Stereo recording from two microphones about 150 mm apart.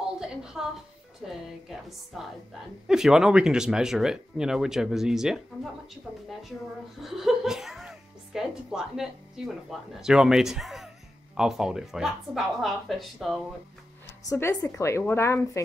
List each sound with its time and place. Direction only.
0.2 s a sound: 5° right (ahead or behind)
1.2 s speech: centre (ahead or behind)
7.0 s speech: centre (ahead or behind)
14.3 s a woman's voice: 20° left (ahead or behind)